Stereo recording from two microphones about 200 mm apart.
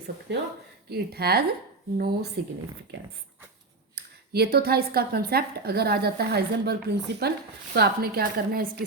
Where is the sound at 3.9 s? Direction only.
55° right (ahead or behind).